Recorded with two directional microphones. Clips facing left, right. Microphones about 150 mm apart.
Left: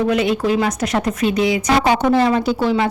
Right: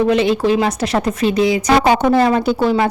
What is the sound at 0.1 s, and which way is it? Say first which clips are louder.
A woman's voice: right 3 dB; 30° right (ahead or behind).